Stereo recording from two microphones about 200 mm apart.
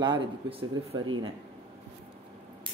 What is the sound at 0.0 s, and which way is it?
Speech, 25° right (ahead or behind).